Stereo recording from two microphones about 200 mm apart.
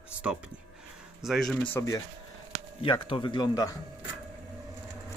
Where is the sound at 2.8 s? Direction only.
25° left (ahead or behind).